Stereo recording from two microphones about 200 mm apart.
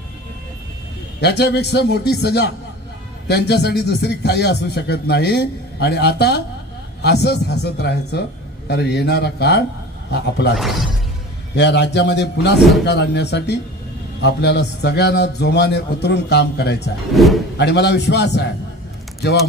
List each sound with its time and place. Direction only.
1.2 s a man's voice: 55° left (ahead or behind)
10.5 s speech: centre (ahead or behind)
11.5 s a man's voice: 60° left (ahead or behind)
17.1 s speech: centre (ahead or behind)
17.6 s a man's voice: 60° left (ahead or behind)